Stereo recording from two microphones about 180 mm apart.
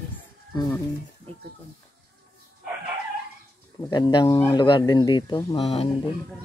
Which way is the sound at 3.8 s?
20° left (ahead or behind).